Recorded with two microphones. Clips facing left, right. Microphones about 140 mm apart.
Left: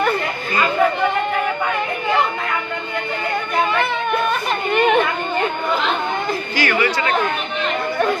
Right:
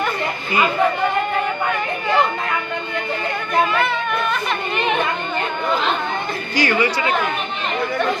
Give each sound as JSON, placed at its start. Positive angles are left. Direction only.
{"t": 6.6, "sound": "speech", "side_deg": -20}